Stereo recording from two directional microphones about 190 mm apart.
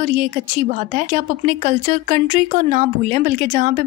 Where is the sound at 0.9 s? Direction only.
40° right (ahead or behind).